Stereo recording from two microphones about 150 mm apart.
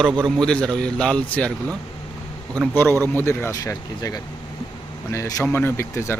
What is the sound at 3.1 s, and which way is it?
Speech, 15° left (ahead or behind).